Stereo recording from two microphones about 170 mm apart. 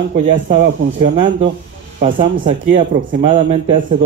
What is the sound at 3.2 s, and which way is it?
Speech, 30° right (ahead or behind).